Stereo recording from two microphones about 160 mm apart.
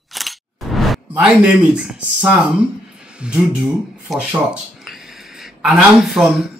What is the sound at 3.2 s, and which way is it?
A man's voice, 5° right (ahead or behind).